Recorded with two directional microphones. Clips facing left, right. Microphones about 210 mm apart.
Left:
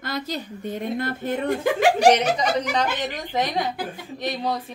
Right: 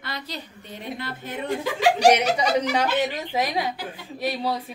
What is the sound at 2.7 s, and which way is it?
A woman's voice, 10° right (ahead or behind).